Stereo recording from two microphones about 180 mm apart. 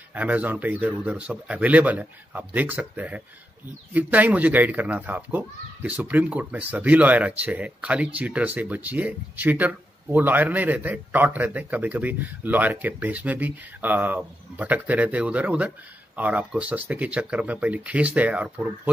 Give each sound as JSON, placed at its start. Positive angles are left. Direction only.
{"t": 0.1, "sound": "speech", "side_deg": -10}